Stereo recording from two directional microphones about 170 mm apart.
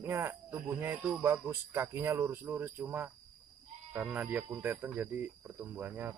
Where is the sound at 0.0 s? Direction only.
15° right (ahead or behind).